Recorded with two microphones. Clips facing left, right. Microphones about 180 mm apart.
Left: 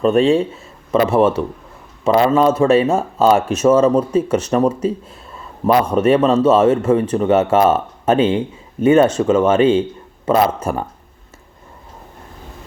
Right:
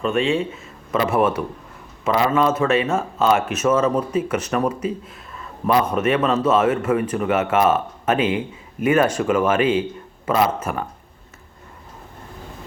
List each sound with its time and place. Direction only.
0.0 s speech: 35° left (ahead or behind)